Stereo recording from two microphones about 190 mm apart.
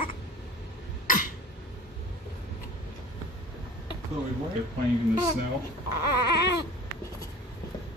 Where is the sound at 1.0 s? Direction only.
45° left (ahead or behind).